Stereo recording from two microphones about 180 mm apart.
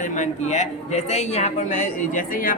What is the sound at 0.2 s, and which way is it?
A man's voice, 40° left (ahead or behind).